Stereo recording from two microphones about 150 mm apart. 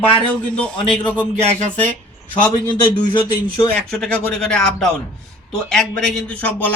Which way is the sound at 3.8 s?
5° left (ahead or behind).